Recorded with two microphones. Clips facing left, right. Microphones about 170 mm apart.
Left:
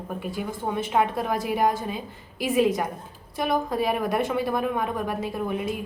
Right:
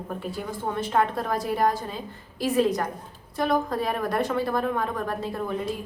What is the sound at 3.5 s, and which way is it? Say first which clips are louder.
Speech: left 2 dB; 5° left (ahead or behind).